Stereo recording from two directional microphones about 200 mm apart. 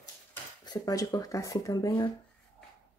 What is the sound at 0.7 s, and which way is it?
Speech, 20° left (ahead or behind).